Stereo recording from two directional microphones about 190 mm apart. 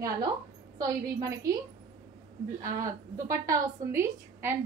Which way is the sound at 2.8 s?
15° right (ahead or behind).